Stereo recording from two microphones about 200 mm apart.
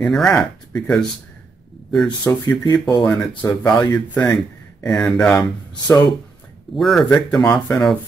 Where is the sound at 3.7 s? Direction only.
5° left (ahead or behind).